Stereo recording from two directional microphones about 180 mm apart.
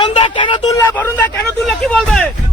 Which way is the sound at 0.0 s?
30° left (ahead or behind).